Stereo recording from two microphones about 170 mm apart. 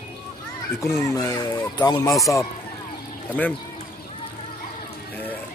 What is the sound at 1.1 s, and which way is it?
Speech, 20° left (ahead or behind).